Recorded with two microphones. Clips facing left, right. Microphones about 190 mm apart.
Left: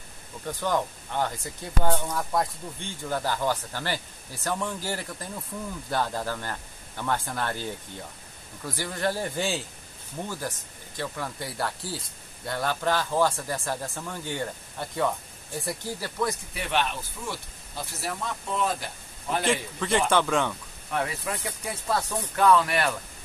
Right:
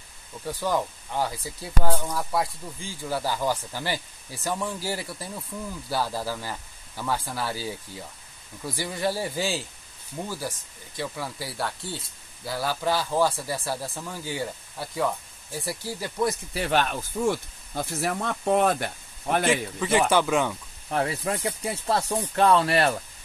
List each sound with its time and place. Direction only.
0.5 s speech: 10° right (ahead or behind)
16.0 s speech: 20° right (ahead or behind)
16.5 s speech: 40° right (ahead or behind); by 19.4 s 60° right (ahead or behind)
19.4 s speech: 5° right (ahead or behind)
20.9 s speech: 35° right (ahead or behind)